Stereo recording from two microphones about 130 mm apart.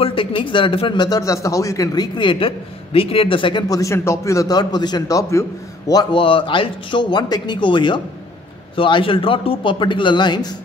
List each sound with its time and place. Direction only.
0.0 s a man's voice: 40° left (ahead or behind); by 2.0 s 25° left (ahead or behind)
2.1 s a man's voice: 40° left (ahead or behind)
3.6 s a man's voice: 25° left (ahead or behind)